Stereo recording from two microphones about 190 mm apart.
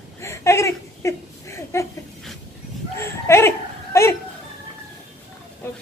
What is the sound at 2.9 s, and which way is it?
Speech, 15° left (ahead or behind).